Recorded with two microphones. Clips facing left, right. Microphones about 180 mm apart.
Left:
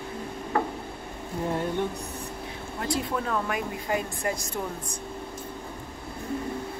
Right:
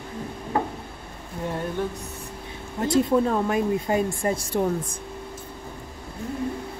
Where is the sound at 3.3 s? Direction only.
30° right (ahead or behind).